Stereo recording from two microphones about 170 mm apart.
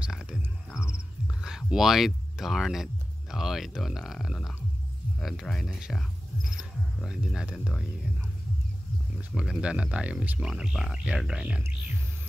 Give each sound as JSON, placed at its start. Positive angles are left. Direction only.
{"t": 0.0, "sound": "music", "side_deg": -5}
{"t": 1.4, "sound": "speech", "side_deg": -5}
{"t": 9.3, "sound": "speech", "side_deg": 0}